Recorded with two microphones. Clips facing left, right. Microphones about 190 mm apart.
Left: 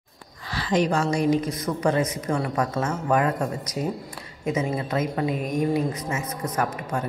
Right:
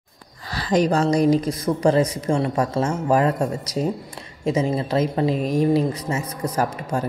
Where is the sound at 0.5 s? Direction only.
40° right (ahead or behind).